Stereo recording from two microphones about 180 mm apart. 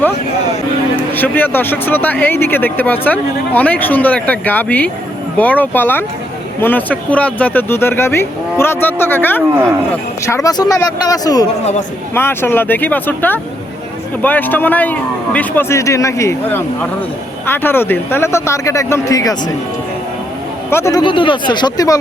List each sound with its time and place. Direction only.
1.1 s speech: 10° left (ahead or behind)
20.7 s speech: 15° left (ahead or behind)
21.0 s speech: 25° left (ahead or behind)